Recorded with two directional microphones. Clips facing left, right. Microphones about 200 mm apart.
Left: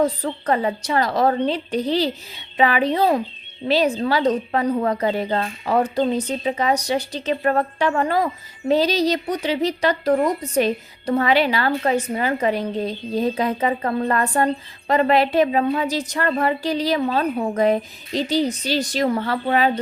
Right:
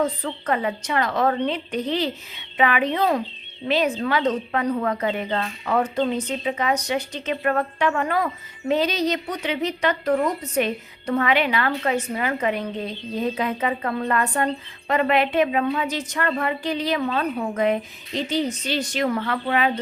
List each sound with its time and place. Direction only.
0.0 s a woman's voice: 35° left (ahead or behind)